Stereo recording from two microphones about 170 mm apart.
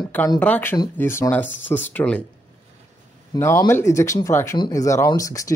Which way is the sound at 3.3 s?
15° left (ahead or behind).